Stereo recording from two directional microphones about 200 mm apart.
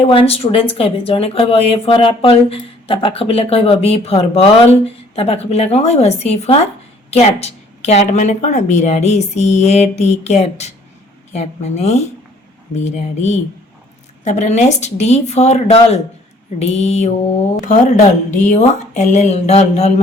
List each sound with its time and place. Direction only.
0.0 s a woman's voice: 30° left (ahead or behind)